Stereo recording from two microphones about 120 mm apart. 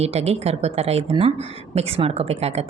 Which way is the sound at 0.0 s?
60° right (ahead or behind).